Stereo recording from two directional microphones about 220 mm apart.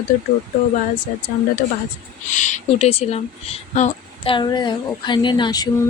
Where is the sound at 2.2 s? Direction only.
35° left (ahead or behind).